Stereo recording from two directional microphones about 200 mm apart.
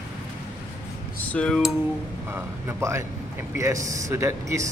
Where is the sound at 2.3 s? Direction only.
10° right (ahead or behind).